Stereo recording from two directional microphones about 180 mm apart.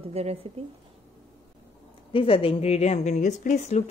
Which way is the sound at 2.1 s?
30° left (ahead or behind).